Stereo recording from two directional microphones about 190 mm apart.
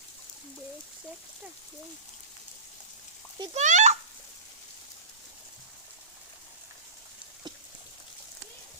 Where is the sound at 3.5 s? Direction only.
40° right (ahead or behind).